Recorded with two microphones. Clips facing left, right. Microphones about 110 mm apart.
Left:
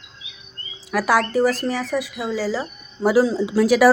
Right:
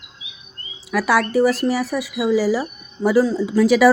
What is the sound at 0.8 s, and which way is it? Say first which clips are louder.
Speech: right 1 dB; centre (ahead or behind).